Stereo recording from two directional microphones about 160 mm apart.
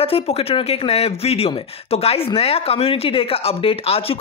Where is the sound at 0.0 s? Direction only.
35° left (ahead or behind).